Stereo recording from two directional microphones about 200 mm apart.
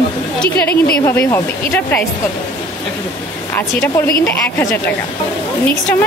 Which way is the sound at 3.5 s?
10° left (ahead or behind).